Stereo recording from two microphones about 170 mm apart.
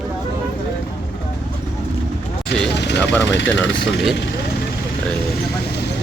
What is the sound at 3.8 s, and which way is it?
Speech, centre (ahead or behind).